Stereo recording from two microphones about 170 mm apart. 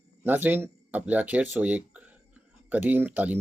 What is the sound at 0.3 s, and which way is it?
Speech, 10° right (ahead or behind).